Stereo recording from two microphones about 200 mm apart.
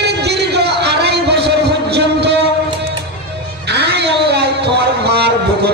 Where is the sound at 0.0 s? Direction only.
55° right (ahead or behind).